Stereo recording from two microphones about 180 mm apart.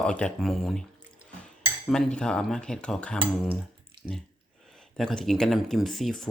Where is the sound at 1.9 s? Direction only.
5° left (ahead or behind).